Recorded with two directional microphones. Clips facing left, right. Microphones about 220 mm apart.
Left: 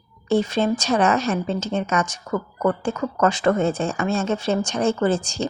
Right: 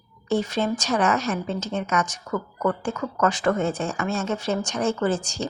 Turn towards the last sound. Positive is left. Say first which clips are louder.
# left 3 dB
turn(degrees=25)  # may be behind; listen again after turning